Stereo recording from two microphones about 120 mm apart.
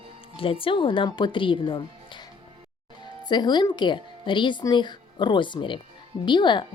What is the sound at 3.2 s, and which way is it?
A woman's voice, 40° left (ahead or behind).